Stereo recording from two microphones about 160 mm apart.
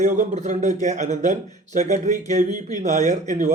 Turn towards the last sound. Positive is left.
turn(degrees=-55)  # may be behind; listen again after turning